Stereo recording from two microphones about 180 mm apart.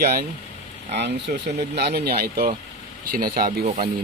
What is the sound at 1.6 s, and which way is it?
Speech, 65° right (ahead or behind).